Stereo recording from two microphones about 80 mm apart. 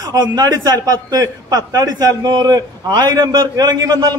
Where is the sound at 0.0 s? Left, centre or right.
Right.